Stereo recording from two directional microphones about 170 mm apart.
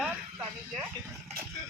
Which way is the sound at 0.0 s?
10° right (ahead or behind).